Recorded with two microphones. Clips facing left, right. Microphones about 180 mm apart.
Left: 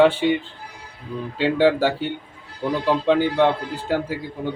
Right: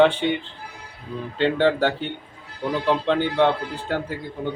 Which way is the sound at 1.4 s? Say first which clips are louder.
Left 2 dB; 5° left (ahead or behind).